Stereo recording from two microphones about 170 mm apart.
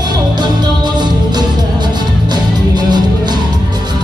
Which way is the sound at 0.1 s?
25° right (ahead or behind).